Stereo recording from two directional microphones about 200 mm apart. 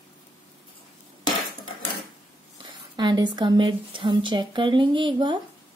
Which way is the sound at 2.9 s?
20° right (ahead or behind).